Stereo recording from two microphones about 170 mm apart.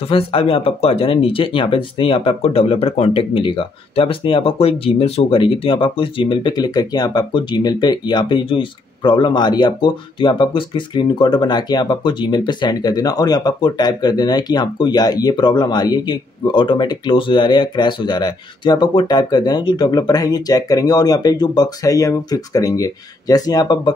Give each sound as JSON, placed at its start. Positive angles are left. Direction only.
{"t": 0.1, "sound": "speech", "side_deg": 35}